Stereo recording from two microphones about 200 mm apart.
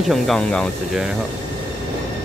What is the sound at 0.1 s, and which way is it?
A man's voice, 5° left (ahead or behind).